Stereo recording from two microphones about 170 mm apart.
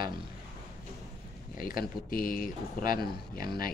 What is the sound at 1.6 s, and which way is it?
Speech, 55° left (ahead or behind).